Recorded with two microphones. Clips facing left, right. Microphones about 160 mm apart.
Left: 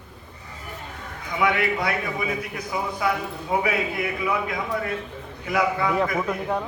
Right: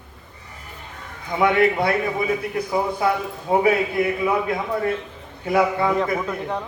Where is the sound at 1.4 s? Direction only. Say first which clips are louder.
Right 5 dB; 30° right (ahead or behind).